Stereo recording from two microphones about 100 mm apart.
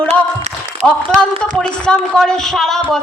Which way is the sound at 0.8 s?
5° right (ahead or behind).